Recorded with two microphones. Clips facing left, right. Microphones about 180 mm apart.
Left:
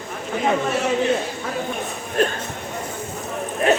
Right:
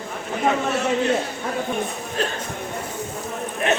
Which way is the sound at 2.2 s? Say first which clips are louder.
Left 6 dB; 55° left (ahead or behind).